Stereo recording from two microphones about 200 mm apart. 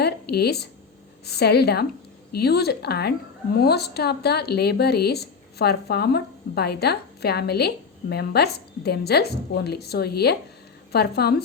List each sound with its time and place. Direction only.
0.0 s speech: 55° left (ahead or behind)